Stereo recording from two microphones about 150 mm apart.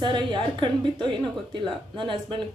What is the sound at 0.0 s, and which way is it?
A woman's voice, 30° right (ahead or behind).